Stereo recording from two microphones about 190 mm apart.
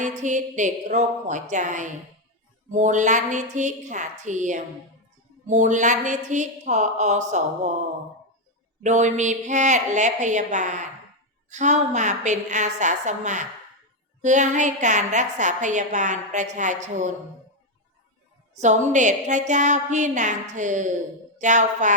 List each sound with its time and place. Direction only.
0.0 s a woman's voice: 40° right (ahead or behind)
8.8 s a woman's voice: 40° right (ahead or behind)
18.5 s a woman's voice: 40° right (ahead or behind)